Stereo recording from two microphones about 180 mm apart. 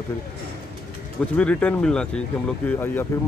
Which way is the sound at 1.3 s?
5° left (ahead or behind).